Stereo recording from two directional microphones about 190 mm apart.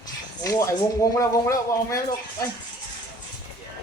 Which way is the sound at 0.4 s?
15° left (ahead or behind).